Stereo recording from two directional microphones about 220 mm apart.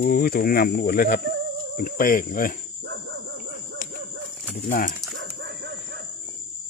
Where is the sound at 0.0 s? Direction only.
40° left (ahead or behind).